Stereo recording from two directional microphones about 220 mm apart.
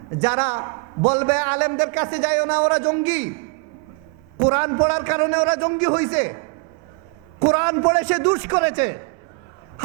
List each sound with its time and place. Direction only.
0.2 s speech: 10° right (ahead or behind)
0.6 s a man's voice: 25° right (ahead or behind)
1.1 s speech: 10° right (ahead or behind)
4.5 s speech: 15° right (ahead or behind)
7.5 s speech: 15° right (ahead or behind)